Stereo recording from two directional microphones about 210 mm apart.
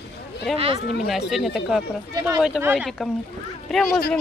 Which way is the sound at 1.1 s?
Centre (ahead or behind).